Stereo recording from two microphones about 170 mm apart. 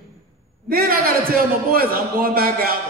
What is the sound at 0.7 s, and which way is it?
A man's voice, 60° right (ahead or behind).